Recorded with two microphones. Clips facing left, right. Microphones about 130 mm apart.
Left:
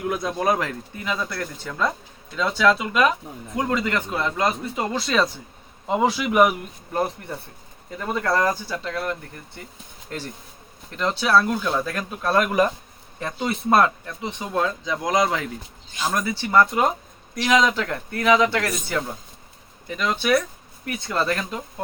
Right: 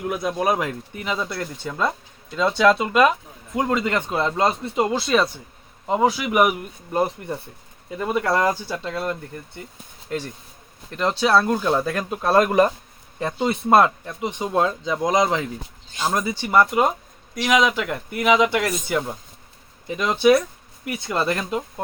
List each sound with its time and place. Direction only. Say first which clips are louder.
0.1 s speech: right 1 dB; 5° right (ahead or behind); by 4.8 s 30° right (ahead or behind)
4.8 s speech: right 3 dB; 10° right (ahead or behind)
7.9 s speech: right 2 dB; 10° right (ahead or behind)
10.9 s speech: right 1 dB; 30° right (ahead or behind)